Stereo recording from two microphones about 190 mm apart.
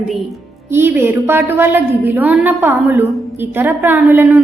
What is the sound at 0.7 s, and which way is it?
A woman's voice, 10° right (ahead or behind).